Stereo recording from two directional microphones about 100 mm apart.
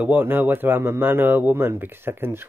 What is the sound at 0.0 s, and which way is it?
Speech, 20° right (ahead or behind).